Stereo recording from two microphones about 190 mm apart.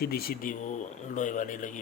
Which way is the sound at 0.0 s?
55° left (ahead or behind).